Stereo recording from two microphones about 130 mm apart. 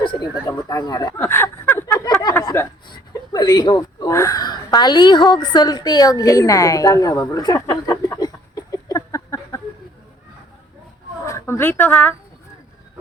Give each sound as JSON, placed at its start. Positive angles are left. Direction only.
{"t": 0.0, "sound": "speech", "side_deg": 35}
{"t": 1.1, "sound": "a sound", "side_deg": 20}
{"t": 2.8, "sound": "speech", "side_deg": 35}
{"t": 11.3, "sound": "speech", "side_deg": 20}